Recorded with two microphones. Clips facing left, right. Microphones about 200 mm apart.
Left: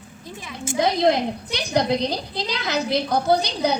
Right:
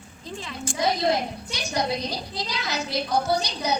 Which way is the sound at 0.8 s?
55° left (ahead or behind).